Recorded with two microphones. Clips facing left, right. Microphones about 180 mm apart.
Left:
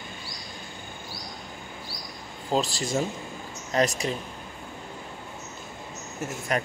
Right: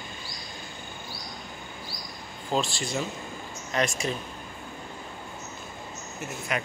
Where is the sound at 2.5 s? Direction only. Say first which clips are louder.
Left 2 dB; 40° left (ahead or behind).